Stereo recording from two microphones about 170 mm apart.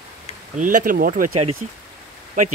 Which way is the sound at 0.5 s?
50° right (ahead or behind).